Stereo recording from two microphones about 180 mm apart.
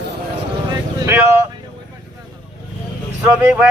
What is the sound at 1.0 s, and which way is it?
Speech, 15° right (ahead or behind).